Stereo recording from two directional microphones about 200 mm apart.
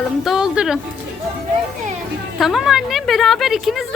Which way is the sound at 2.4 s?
Centre (ahead or behind).